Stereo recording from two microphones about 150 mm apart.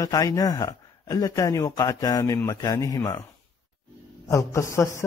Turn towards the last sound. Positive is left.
turn(degrees=20)  # may be behind; listen again after turning